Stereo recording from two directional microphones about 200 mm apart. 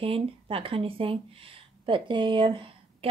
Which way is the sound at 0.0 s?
30° right (ahead or behind).